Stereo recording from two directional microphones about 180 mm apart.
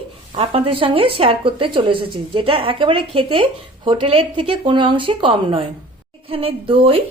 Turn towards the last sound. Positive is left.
turn(degrees=-30)  # may be behind; listen again after turning